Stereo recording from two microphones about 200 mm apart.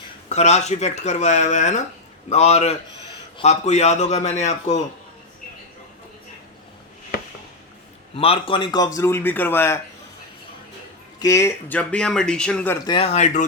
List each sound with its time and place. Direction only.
0.3 s speech: 35° left (ahead or behind)
8.1 s speech: 30° left (ahead or behind); by 9.8 s 10° left (ahead or behind)
11.2 s speech: 15° left (ahead or behind); by 13.4 s 35° left (ahead or behind)